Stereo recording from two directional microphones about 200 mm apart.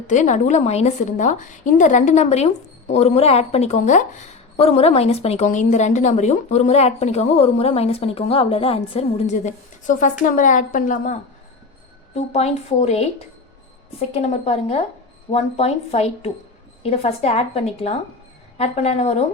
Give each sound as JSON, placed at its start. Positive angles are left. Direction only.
{"t": 0.1, "sound": "a woman's voice", "side_deg": 40}
{"t": 14.1, "sound": "a woman's voice", "side_deg": 30}